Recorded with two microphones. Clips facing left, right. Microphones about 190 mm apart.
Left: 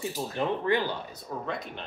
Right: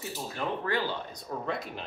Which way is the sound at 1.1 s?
Centre (ahead or behind).